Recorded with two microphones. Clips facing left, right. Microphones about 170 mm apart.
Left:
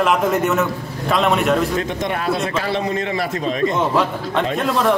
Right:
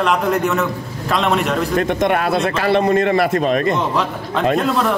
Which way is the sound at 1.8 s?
60° right (ahead or behind).